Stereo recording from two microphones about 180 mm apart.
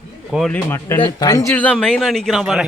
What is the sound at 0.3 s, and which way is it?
Speech, centre (ahead or behind).